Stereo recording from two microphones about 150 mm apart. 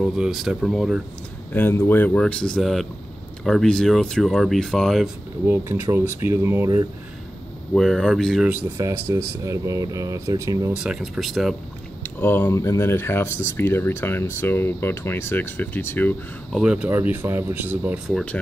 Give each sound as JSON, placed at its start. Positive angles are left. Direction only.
{"t": 0.0, "sound": "speech", "side_deg": 0}
{"t": 1.5, "sound": "speech", "side_deg": 15}
{"t": 5.5, "sound": "speech", "side_deg": -20}
{"t": 7.7, "sound": "speech", "side_deg": 5}
{"t": 8.7, "sound": "speech", "side_deg": -20}
{"t": 10.8, "sound": "speech", "side_deg": -5}
{"t": 12.2, "sound": "speech", "side_deg": 15}
{"t": 16.5, "sound": "speech", "side_deg": -5}